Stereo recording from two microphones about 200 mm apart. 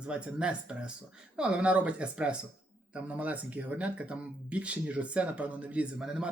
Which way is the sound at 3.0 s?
5° right (ahead or behind).